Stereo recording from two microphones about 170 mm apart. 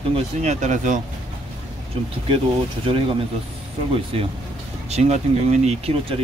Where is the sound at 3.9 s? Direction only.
35° right (ahead or behind).